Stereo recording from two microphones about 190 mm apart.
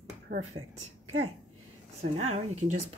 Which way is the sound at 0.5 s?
30° right (ahead or behind).